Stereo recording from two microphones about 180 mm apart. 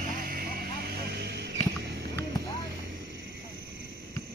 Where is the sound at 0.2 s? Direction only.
55° right (ahead or behind).